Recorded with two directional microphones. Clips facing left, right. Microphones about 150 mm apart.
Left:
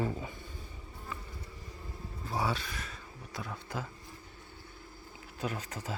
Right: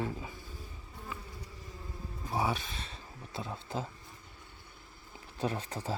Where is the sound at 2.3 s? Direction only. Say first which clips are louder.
Right 1 dB; 20° right (ahead or behind).